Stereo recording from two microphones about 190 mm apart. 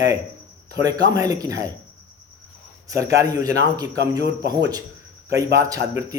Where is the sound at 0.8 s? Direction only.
20° right (ahead or behind).